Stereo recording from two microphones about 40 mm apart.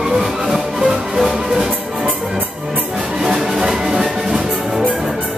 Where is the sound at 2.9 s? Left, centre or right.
Centre.